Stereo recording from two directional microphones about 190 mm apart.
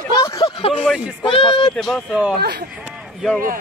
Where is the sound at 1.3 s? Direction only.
25° left (ahead or behind).